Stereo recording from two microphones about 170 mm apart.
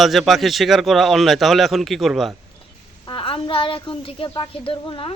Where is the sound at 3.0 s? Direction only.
30° left (ahead or behind).